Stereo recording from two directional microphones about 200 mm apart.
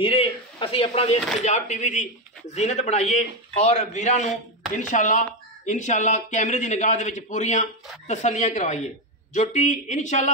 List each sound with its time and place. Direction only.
0.0 s speech: 25° left (ahead or behind)